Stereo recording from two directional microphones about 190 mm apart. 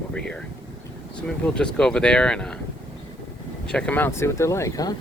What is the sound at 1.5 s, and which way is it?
Speech, 5° left (ahead or behind).